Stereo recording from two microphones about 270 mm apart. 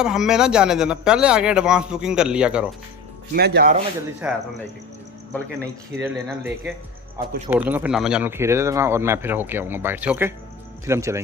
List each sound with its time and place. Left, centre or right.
0.0 s speech: centre
3.3 s speech: right
4.2 s speech: centre
5.9 s speech: centre